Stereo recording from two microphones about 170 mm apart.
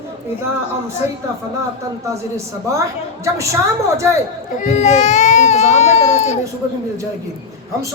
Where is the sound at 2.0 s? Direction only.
15° right (ahead or behind).